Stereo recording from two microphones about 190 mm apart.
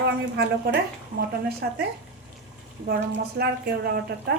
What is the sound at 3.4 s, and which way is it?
Speech, 55° right (ahead or behind).